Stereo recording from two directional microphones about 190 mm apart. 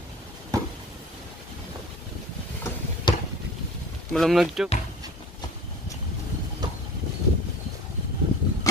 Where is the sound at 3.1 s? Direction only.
25° left (ahead or behind).